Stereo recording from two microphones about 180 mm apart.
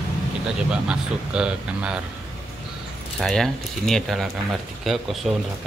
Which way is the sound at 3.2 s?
Centre (ahead or behind).